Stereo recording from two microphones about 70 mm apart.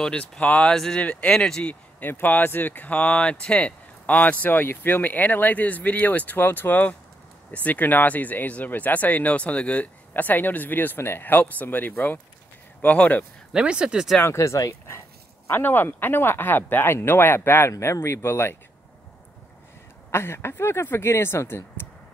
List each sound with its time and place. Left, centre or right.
0.0 s speech: centre
0.7 s speech: centre
2.0 s speech: left
13.5 s speech: centre
14.2 s bow-wow: left
15.6 s speech: left
17.6 s speech: left
20.1 s speech: left